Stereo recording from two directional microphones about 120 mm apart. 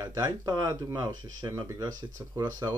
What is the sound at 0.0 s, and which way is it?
Speech, 30° right (ahead or behind).